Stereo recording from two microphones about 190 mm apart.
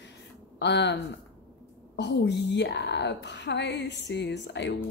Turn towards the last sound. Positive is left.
turn(degrees=65)  # may be behind; listen again after turning